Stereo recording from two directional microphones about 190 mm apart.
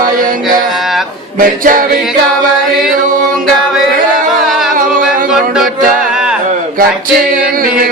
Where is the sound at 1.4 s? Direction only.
45° right (ahead or behind).